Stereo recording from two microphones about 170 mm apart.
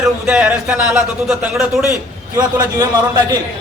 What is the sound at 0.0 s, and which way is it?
Speech, 5° right (ahead or behind).